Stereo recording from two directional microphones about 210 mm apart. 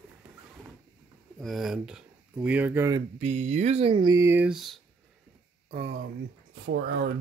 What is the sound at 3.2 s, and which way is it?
Speech, 30° right (ahead or behind).